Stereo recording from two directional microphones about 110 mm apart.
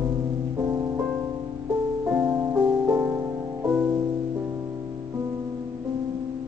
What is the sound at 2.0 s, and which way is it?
Music, 15° right (ahead or behind).